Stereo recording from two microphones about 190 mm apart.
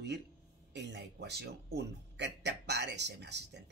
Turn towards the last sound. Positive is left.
turn(degrees=-65)  # may be behind; listen again after turning